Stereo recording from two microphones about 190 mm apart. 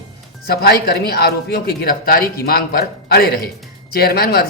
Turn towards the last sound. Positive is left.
turn(degrees=55)  # may be behind; listen again after turning